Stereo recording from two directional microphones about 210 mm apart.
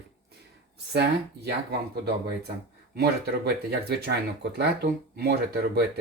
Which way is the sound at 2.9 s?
50° right (ahead or behind).